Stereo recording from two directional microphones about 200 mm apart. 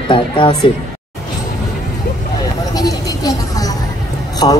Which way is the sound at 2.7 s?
20° left (ahead or behind).